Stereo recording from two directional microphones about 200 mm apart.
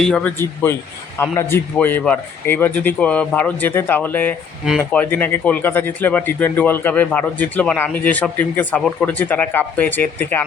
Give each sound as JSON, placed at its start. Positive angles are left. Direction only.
{"t": 0.0, "sound": "speech", "side_deg": 5}